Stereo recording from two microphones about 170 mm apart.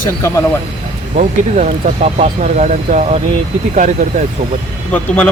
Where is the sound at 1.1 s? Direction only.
50° right (ahead or behind).